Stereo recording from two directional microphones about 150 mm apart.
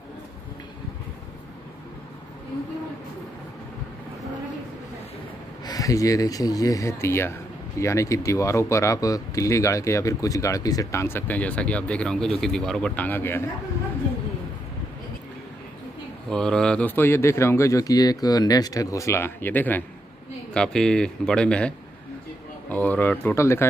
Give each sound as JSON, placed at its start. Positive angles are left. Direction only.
{"t": 5.7, "sound": "speech", "side_deg": 20}
{"t": 16.3, "sound": "speech", "side_deg": 5}